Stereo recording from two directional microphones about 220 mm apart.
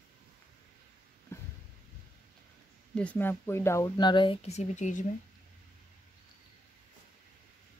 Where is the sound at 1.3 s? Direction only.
10° left (ahead or behind).